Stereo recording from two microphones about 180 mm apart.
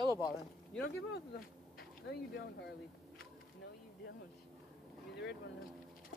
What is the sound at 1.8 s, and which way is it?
Speech, 60° left (ahead or behind).